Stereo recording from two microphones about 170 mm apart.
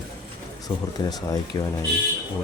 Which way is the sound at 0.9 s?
20° left (ahead or behind).